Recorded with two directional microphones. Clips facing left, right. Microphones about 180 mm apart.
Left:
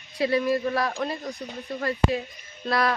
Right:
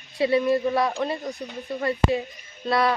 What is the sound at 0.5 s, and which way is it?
Speech, 25° right (ahead or behind).